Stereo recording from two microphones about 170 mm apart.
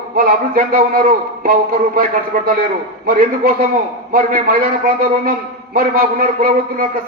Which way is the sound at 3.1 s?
55° right (ahead or behind).